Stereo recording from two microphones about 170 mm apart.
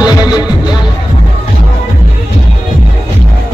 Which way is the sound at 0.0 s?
25° left (ahead or behind).